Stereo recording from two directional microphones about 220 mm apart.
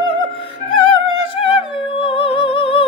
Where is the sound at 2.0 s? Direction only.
25° left (ahead or behind).